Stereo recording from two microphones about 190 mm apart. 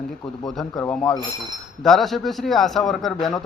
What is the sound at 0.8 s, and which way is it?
Speech, 15° left (ahead or behind).